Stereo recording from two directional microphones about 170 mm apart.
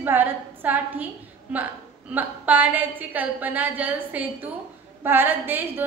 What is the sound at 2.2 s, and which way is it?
A woman's voice, 10° right (ahead or behind).